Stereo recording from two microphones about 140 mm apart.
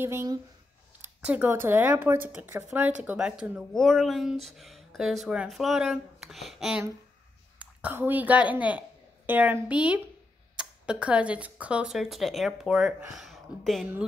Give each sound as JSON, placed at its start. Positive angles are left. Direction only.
{"t": 0.0, "sound": "speech", "side_deg": -20}
{"t": 3.7, "sound": "a woman's voice", "side_deg": 5}